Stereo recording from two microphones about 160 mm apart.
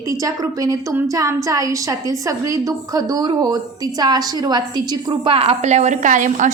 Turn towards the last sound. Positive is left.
turn(degrees=-50)  # may be behind; listen again after turning